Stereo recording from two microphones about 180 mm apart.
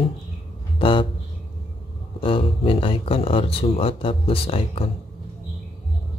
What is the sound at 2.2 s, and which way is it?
Speech, 30° left (ahead or behind).